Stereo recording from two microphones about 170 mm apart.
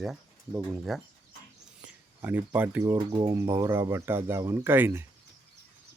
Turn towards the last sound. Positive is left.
turn(degrees=-15)  # may be behind; listen again after turning